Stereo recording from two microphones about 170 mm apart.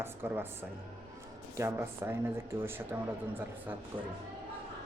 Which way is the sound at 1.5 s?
15° right (ahead or behind).